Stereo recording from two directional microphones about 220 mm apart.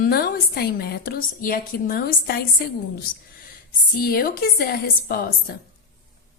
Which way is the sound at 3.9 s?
40° left (ahead or behind).